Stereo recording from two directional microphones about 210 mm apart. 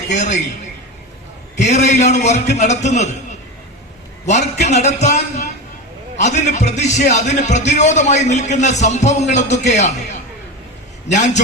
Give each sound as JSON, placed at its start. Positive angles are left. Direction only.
{"t": 0.1, "sound": "a man's voice", "side_deg": 35}
{"t": 1.5, "sound": "a man's voice", "side_deg": 35}
{"t": 4.3, "sound": "a man's voice", "side_deg": 35}